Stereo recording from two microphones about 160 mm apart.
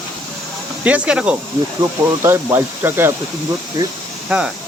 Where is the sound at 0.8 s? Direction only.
5° right (ahead or behind).